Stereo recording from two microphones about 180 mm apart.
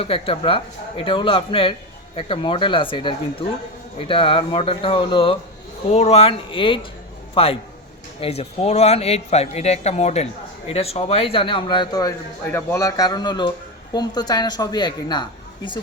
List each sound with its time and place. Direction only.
0.0 s a woman's voice: 30° left (ahead or behind)